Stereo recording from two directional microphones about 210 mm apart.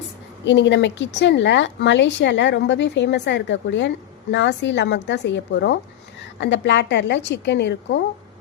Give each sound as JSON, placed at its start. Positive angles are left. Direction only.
{"t": 0.4, "sound": "speech", "side_deg": 60}